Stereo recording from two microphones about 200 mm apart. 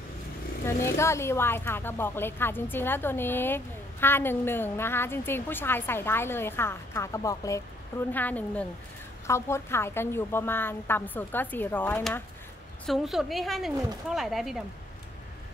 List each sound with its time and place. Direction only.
0.7 s a woman's voice: 15° left (ahead or behind)